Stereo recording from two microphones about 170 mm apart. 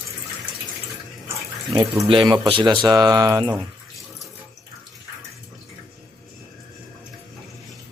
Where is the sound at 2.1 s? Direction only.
25° right (ahead or behind).